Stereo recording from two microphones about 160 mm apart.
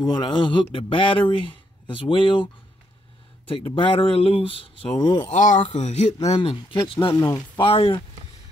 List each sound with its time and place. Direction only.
0.1 s speech: 30° left (ahead or behind)
5.3 s speech: 50° left (ahead or behind); by 8.0 s 35° left (ahead or behind)